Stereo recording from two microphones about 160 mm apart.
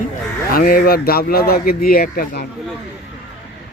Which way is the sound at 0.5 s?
65° left (ahead or behind).